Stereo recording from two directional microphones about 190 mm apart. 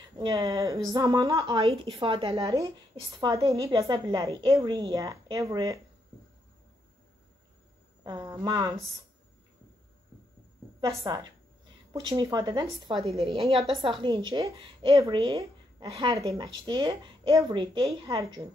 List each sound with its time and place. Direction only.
0.2 s a woman's voice: 20° right (ahead or behind)
8.0 s speech: 20° right (ahead or behind)
10.8 s a woman's voice: 20° right (ahead or behind)
13.6 s a woman's voice: centre (ahead or behind)
14.0 s a woman's voice: 25° right (ahead or behind)